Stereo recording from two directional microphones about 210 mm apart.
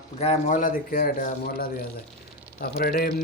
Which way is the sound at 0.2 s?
35° left (ahead or behind).